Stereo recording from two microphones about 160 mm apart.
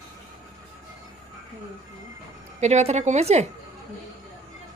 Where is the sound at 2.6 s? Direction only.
45° right (ahead or behind).